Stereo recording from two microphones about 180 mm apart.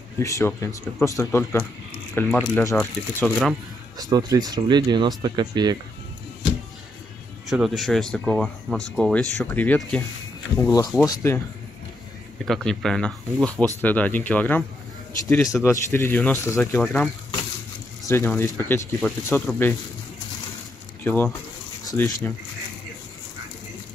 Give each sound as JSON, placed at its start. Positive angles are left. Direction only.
{"t": 0.2, "sound": "speech", "side_deg": 15}
{"t": 4.0, "sound": "speech", "side_deg": -20}
{"t": 7.4, "sound": "speech", "side_deg": 0}
{"t": 10.6, "sound": "speech", "side_deg": 20}
{"t": 12.4, "sound": "speech", "side_deg": 5}
{"t": 21.0, "sound": "speech", "side_deg": 10}